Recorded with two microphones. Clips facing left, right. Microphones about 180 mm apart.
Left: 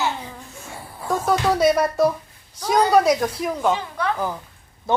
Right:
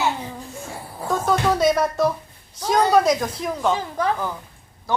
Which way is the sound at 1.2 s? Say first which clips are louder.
Left 1 dB; 5° left (ahead or behind).